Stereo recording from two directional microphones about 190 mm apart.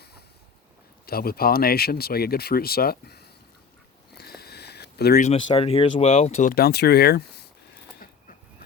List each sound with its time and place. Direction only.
1.0 s speech: 55° left (ahead or behind)
4.2 s a sound: 55° left (ahead or behind)
5.2 s speech: 35° left (ahead or behind)
6.5 s speech: 55° left (ahead or behind)